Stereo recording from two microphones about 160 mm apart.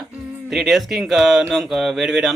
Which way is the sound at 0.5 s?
Centre (ahead or behind).